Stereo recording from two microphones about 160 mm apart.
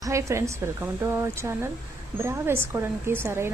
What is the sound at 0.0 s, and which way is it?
Speech, 20° right (ahead or behind).